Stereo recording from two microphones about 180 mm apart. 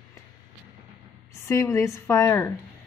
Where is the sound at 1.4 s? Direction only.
15° left (ahead or behind).